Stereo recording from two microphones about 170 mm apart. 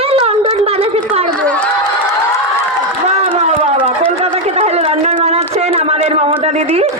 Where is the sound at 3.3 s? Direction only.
40° right (ahead or behind).